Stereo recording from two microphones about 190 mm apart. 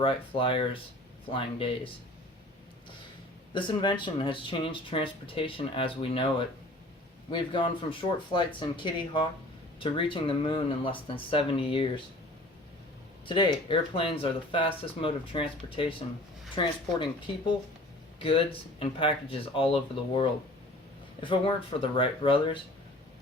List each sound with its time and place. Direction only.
0.0 s speech: 30° left (ahead or behind)
3.5 s speech: 25° left (ahead or behind)
13.2 s speech: 25° left (ahead or behind)